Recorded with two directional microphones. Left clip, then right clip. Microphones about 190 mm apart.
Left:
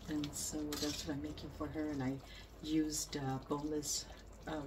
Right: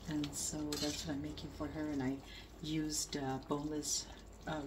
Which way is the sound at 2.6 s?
20° right (ahead or behind).